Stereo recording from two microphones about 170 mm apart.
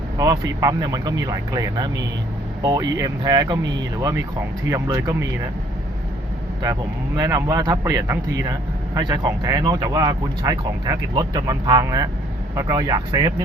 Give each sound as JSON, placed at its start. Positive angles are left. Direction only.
{"t": 0.2, "sound": "speech", "side_deg": -20}
{"t": 4.1, "sound": "speech", "side_deg": -10}
{"t": 7.2, "sound": "speech", "side_deg": -20}